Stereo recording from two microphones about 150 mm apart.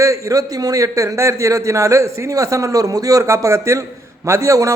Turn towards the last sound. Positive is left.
turn(degrees=-20)  # may be behind; listen again after turning